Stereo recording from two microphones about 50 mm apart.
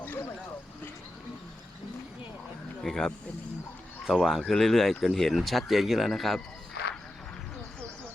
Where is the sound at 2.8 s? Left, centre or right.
Centre.